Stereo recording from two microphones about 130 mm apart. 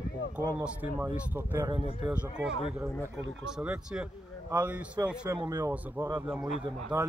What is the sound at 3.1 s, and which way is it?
Speech, 10° right (ahead or behind).